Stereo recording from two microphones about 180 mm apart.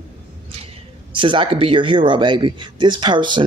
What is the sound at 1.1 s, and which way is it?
Speech, 30° right (ahead or behind).